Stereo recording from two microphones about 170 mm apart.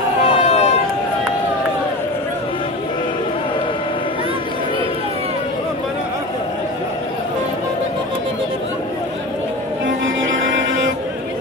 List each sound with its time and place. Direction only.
0.4 s run: 40° left (ahead or behind)